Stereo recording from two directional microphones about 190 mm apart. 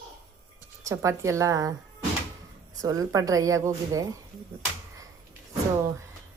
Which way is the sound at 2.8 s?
20° right (ahead or behind).